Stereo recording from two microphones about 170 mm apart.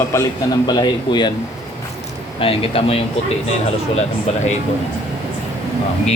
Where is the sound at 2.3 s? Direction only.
35° left (ahead or behind).